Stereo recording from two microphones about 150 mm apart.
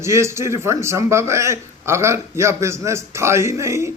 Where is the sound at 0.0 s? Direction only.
20° right (ahead or behind).